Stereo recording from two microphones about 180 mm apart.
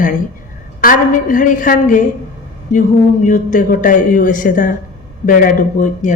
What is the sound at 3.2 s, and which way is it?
Speech, 45° left (ahead or behind).